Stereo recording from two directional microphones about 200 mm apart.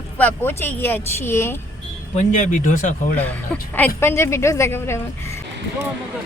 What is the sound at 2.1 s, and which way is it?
Speech, 40° left (ahead or behind).